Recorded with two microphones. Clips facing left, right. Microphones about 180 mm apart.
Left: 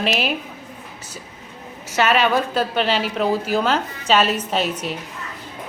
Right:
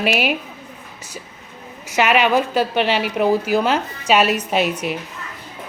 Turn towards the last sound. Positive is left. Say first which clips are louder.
# right 3 dB
turn(degrees=-10)  # may be behind; listen again after turning